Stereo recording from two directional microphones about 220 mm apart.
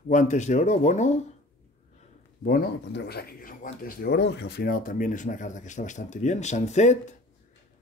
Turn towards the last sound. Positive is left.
turn(degrees=30)  # may be behind; listen again after turning